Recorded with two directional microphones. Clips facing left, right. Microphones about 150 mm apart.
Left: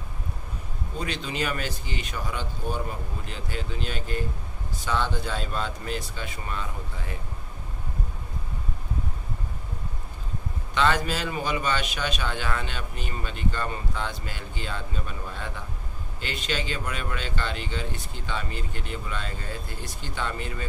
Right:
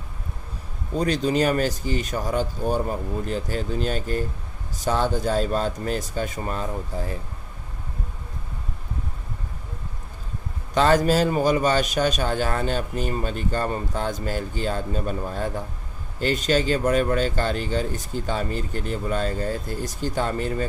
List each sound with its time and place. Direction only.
0.9 s a man's voice: 40° right (ahead or behind)
10.7 s a man's voice: 40° right (ahead or behind)